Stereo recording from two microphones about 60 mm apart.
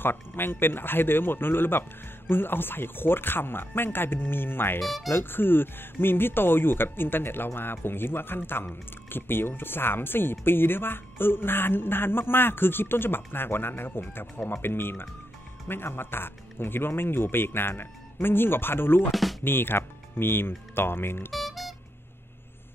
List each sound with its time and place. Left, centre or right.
0.0 s speech: left
4.8 s speech: centre
5.1 s speech: left
21.3 s music: centre